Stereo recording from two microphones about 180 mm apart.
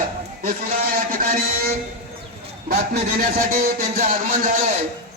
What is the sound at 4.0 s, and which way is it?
Speech, 45° right (ahead or behind).